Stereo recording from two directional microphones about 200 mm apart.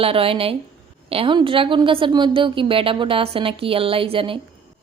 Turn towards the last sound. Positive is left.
turn(degrees=-25)  # may be behind; listen again after turning